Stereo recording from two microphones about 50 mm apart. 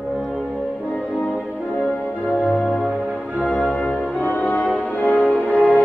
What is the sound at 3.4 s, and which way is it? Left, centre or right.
Music, left.